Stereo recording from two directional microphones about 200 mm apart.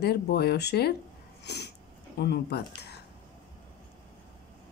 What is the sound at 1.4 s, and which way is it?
Sneeze, 55° left (ahead or behind).